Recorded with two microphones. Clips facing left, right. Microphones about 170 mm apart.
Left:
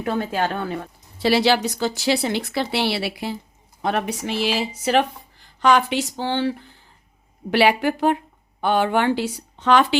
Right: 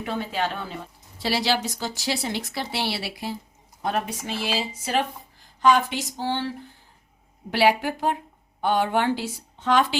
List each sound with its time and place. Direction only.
0.0 s a woman's voice: 50° left (ahead or behind); by 6.5 s 75° left (ahead or behind)
7.5 s a woman's voice: 75° left (ahead or behind)